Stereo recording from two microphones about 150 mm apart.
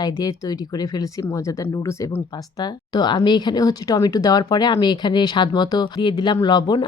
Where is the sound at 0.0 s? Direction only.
25° left (ahead or behind).